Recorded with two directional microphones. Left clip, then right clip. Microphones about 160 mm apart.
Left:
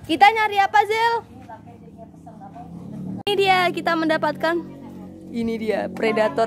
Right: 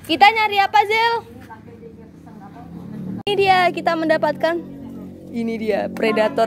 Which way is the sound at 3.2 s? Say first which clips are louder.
Right 3 dB; 15° left (ahead or behind).